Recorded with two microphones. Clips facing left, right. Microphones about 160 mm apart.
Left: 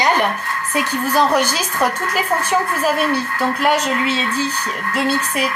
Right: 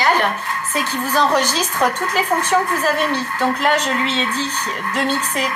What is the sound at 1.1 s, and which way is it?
A woman's voice, 10° left (ahead or behind).